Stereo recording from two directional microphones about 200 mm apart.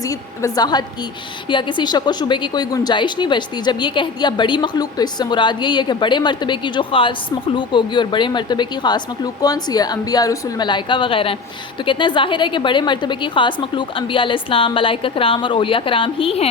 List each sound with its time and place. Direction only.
0.1 s a woman's voice: 20° left (ahead or behind)